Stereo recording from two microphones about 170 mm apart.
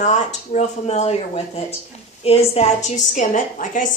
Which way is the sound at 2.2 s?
40° left (ahead or behind).